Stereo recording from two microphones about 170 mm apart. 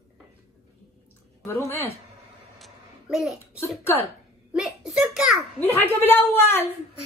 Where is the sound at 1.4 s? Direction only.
15° left (ahead or behind).